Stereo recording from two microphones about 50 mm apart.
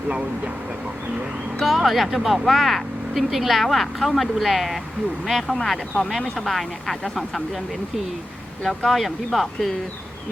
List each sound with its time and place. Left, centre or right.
0.1 s speech: right
1.6 s speech: centre
8.6 s speech: centre